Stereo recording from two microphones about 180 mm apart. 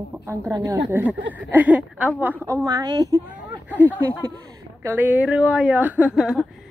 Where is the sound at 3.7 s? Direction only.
10° right (ahead or behind).